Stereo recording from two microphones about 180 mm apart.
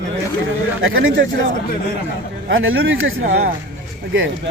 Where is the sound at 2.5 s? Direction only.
90° right.